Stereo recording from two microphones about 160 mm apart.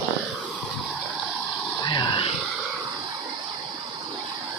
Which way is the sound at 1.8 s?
25° left (ahead or behind).